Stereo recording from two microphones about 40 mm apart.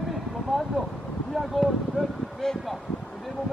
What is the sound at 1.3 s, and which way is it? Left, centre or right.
Speech, centre.